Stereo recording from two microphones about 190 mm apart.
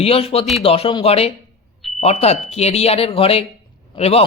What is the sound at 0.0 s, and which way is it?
A man's voice, 30° left (ahead or behind).